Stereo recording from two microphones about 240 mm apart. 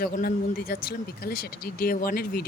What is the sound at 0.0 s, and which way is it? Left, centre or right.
Speech, left.